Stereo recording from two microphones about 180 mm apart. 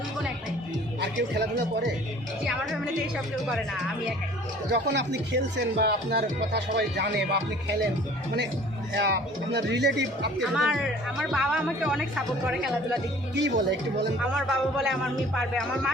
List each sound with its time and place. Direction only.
1.0 s speech: 70° right (ahead or behind)
4.7 s speech: 75° right (ahead or behind)
9.0 s speech: 70° right (ahead or behind)
10.4 s speech: 5° right (ahead or behind)
13.3 s speech: 75° right (ahead or behind)
14.3 s speech: centre (ahead or behind)